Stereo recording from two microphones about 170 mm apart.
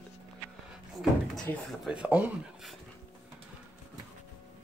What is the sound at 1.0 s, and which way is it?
Speech, 5° left (ahead or behind).